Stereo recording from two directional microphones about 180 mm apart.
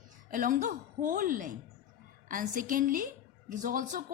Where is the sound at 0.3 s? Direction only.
50° right (ahead or behind).